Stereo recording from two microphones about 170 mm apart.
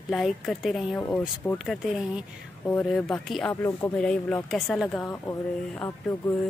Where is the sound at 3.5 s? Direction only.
15° left (ahead or behind).